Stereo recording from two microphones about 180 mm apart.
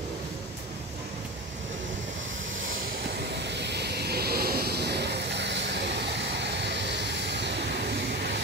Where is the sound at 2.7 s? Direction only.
60° right (ahead or behind).